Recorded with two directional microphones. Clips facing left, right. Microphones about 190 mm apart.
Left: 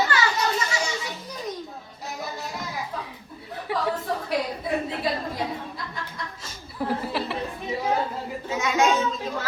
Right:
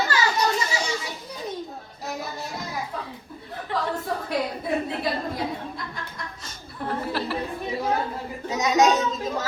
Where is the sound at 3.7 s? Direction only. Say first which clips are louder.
Left 1 dB; 10° left (ahead or behind).